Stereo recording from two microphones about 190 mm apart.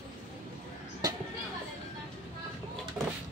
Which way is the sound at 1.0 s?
20° right (ahead or behind).